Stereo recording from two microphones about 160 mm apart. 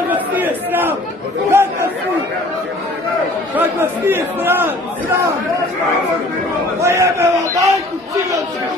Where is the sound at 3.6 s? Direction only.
15° right (ahead or behind).